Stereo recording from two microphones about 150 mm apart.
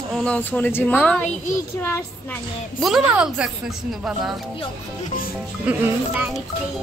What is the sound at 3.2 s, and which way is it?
A child's voice, 5° right (ahead or behind).